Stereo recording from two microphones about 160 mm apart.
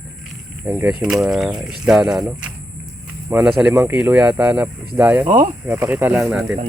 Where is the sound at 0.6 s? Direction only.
15° right (ahead or behind).